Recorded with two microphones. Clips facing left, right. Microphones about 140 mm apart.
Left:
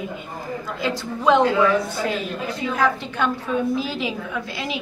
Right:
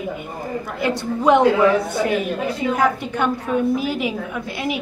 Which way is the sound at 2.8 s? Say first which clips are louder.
Left 1 dB; 15° right (ahead or behind).